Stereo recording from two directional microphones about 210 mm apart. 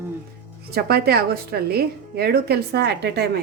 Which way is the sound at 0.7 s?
50° right (ahead or behind).